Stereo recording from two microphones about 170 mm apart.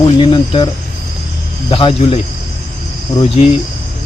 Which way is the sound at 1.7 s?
30° left (ahead or behind).